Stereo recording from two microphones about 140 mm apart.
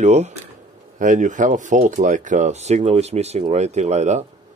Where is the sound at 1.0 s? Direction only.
65° right (ahead or behind).